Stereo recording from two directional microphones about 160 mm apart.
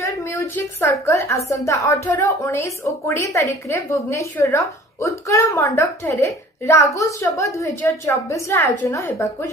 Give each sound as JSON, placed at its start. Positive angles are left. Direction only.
{"t": 0.0, "sound": "a woman's voice", "side_deg": 15}